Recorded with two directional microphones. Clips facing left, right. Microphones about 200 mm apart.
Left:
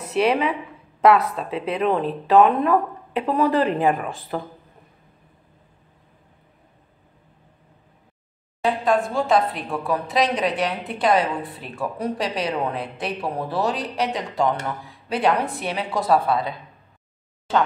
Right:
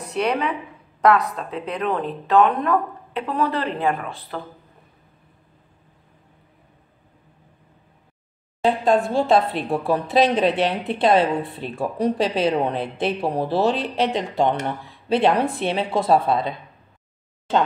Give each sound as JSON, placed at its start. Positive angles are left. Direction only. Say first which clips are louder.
{"t": 0.0, "sound": "speech", "louder": "left 3 dB", "side_deg": 5}
{"t": 8.6, "sound": "a woman's voice", "louder": "right 2 dB", "side_deg": -25}